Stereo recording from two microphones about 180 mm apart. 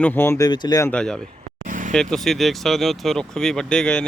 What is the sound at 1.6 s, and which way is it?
Vehicle, 50° right (ahead or behind).